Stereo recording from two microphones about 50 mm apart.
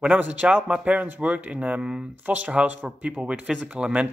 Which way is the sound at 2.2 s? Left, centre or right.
Right.